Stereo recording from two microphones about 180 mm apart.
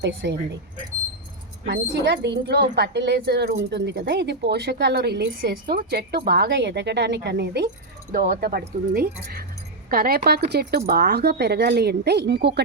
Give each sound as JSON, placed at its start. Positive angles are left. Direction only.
{"t": 0.0, "sound": "speech", "side_deg": -85}
{"t": 1.6, "sound": "a woman's voice", "side_deg": -70}
{"t": 8.1, "sound": "speech", "side_deg": -60}